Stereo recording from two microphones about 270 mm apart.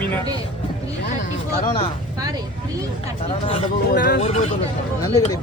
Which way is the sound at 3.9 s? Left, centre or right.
Left.